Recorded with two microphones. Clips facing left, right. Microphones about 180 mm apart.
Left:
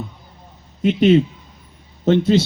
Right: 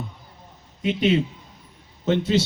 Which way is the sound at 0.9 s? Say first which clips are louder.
Left 7 dB; 45° left (ahead or behind).